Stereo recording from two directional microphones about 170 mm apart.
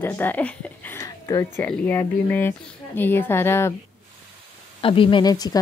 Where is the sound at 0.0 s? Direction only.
10° left (ahead or behind).